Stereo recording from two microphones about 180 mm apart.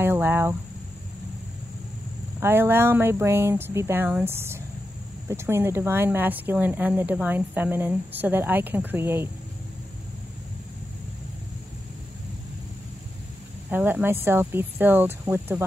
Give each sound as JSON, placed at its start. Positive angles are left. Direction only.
{"t": 0.0, "sound": "speech", "side_deg": -10}
{"t": 2.4, "sound": "speech", "side_deg": -10}
{"t": 13.7, "sound": "speech", "side_deg": -10}